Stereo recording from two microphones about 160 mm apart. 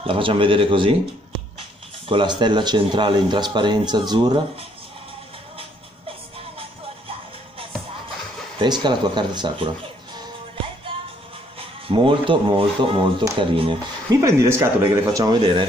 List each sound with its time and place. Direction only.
0.0 s speech: 35° right (ahead or behind)
2.0 s speech: 30° right (ahead or behind)
6.6 s music: 35° right (ahead or behind)
8.5 s speech: 30° right (ahead or behind)
10.9 s music: 35° right (ahead or behind)
11.9 s speech: 30° right (ahead or behind)
14.2 s speech: 15° right (ahead or behind)